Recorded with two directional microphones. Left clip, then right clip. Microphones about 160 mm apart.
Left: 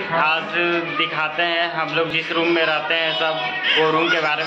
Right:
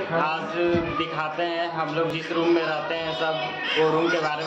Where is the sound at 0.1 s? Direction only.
Centre (ahead or behind).